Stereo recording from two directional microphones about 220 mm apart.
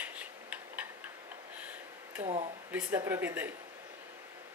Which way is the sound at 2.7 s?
10° right (ahead or behind).